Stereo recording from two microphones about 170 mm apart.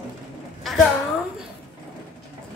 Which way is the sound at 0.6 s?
Centre (ahead or behind).